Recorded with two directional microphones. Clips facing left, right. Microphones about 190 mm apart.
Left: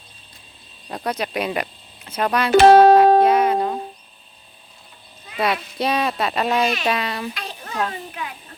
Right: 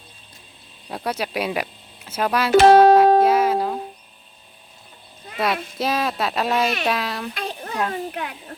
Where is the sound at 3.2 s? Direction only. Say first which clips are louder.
Left 1 dB; 5° right (ahead or behind).